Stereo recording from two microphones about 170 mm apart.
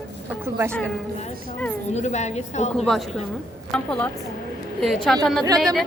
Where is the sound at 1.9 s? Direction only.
40° left (ahead or behind).